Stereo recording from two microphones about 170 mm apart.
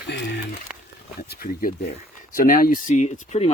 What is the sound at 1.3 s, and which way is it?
Speech, 60° left (ahead or behind).